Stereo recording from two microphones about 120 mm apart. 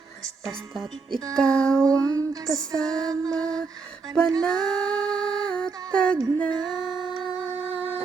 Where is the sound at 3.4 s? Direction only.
5° left (ahead or behind).